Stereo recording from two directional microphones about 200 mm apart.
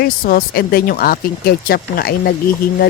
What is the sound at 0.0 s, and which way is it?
Speech, 45° left (ahead or behind).